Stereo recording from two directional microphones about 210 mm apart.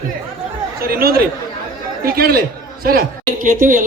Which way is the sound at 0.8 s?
45° right (ahead or behind).